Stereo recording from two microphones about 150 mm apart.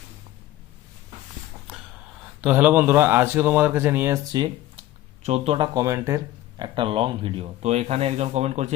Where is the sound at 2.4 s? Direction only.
10° right (ahead or behind).